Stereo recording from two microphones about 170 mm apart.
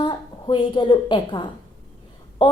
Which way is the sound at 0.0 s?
25° left (ahead or behind).